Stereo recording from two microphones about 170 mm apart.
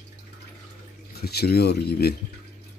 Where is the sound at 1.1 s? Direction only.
70° left (ahead or behind).